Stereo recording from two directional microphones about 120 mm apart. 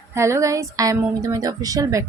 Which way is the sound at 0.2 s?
25° right (ahead or behind).